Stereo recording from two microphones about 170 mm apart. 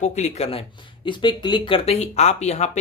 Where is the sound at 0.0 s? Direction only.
40° left (ahead or behind).